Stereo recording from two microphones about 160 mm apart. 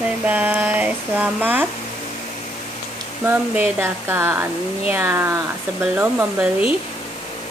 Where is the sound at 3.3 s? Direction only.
15° right (ahead or behind).